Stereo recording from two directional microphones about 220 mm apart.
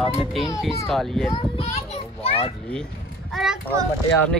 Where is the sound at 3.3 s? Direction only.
Centre (ahead or behind).